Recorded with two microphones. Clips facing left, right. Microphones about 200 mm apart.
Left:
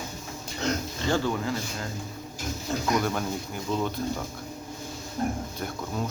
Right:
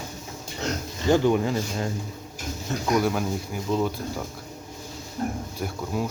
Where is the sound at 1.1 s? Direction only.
20° right (ahead or behind).